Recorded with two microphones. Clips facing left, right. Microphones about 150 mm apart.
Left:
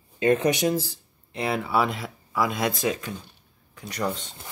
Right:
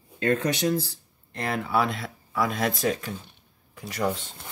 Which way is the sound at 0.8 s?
90° left.